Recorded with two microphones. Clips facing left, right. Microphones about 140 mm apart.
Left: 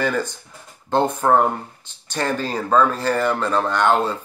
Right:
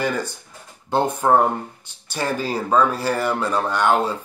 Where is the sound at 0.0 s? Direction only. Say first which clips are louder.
Left 2 dB; 10° right (ahead or behind).